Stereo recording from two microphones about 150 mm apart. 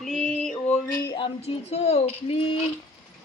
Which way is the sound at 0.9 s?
30° left (ahead or behind).